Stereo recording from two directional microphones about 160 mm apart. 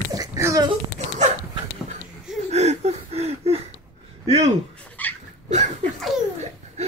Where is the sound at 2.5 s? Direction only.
45° right (ahead or behind).